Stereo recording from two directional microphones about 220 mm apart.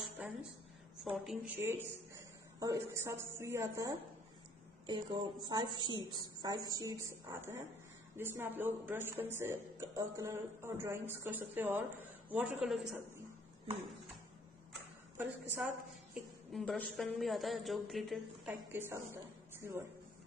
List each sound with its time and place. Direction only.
0.2 s a sound: 5° right (ahead or behind)
1.0 s a man's voice: centre (ahead or behind)
15.1 s a woman's voice: 10° right (ahead or behind)